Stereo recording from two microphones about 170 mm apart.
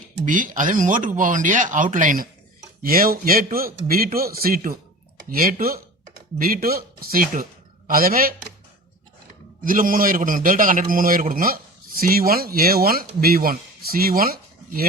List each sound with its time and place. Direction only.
0.3 s a man's voice: 50° right (ahead or behind)
9.6 s a man's voice: 55° right (ahead or behind)